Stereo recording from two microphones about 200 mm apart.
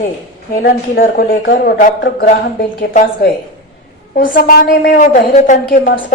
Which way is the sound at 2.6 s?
40° left (ahead or behind).